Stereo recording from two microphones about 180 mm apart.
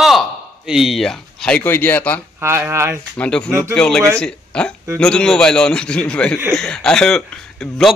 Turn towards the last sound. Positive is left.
turn(degrees=0)  # may be behind; listen again after turning